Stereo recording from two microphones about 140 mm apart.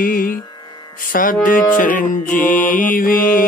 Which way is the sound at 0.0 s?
90° left.